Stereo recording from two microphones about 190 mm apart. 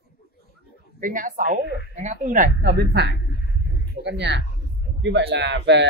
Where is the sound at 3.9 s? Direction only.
65° right (ahead or behind).